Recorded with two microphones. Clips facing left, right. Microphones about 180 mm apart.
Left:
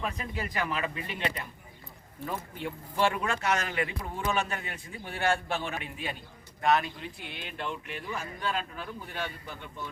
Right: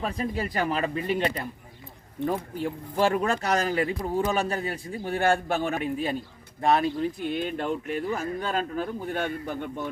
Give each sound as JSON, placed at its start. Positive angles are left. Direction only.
{"t": 0.0, "sound": "speech", "side_deg": -35}